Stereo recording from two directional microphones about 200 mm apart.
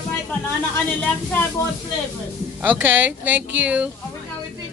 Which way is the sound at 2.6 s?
10° right (ahead or behind).